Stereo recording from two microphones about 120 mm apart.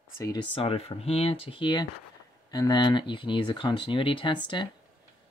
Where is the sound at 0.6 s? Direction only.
55° left (ahead or behind); by 4.6 s 40° left (ahead or behind).